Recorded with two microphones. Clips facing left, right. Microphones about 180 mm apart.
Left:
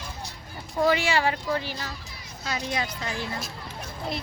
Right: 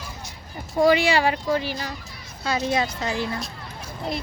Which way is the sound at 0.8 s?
15° right (ahead or behind).